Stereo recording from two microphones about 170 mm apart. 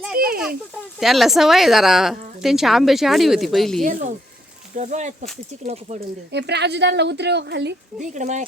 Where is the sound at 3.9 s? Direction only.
50° right (ahead or behind).